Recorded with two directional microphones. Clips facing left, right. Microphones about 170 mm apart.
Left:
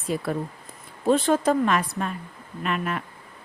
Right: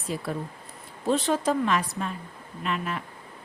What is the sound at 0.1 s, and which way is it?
Speech, 60° left (ahead or behind).